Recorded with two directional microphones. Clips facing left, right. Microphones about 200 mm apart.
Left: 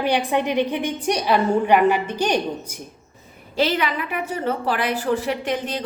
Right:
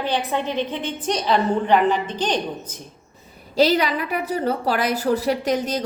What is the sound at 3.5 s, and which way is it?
A woman's voice, 40° right (ahead or behind).